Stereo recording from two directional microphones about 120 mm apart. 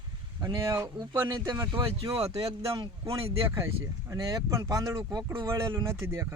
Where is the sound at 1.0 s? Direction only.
35° right (ahead or behind).